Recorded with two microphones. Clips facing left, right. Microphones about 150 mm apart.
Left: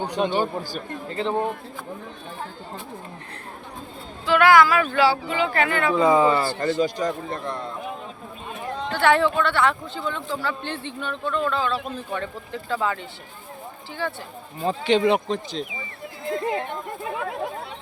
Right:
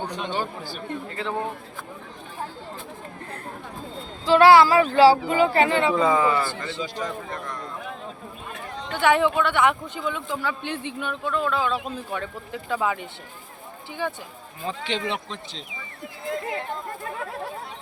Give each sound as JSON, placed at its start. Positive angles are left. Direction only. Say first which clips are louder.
{"t": 0.6, "sound": "a man's voice", "louder": "even", "side_deg": 40}
{"t": 1.2, "sound": "speech", "louder": "left 5 dB", "side_deg": 25}
{"t": 4.3, "sound": "female singing", "louder": "right 2 dB", "side_deg": -30}
{"t": 5.5, "sound": "speech", "louder": "right 3 dB", "side_deg": -25}
{"t": 6.0, "sound": "speech", "louder": "left 3 dB", "side_deg": 20}
{"t": 6.7, "sound": "a man's voice", "louder": "left 8 dB", "side_deg": 50}
{"t": 8.9, "sound": "a man's voice", "louder": "left 1 dB", "side_deg": -15}
{"t": 14.6, "sound": "speech", "louder": "left 9 dB", "side_deg": 40}
{"t": 16.5, "sound": "speech", "louder": "left 3 dB", "side_deg": 20}